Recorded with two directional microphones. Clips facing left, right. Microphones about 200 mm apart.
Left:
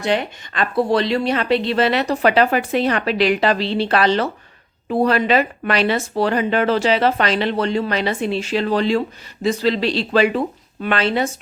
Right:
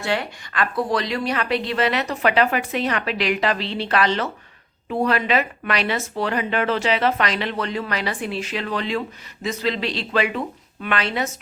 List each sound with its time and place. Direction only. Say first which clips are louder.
0.0 s speech: left 4 dB; 20° left (ahead or behind)